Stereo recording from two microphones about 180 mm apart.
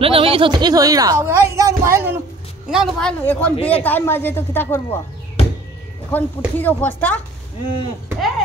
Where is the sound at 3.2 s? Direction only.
10° left (ahead or behind).